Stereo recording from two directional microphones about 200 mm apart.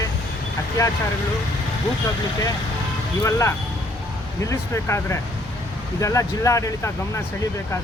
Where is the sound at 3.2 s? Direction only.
15° left (ahead or behind).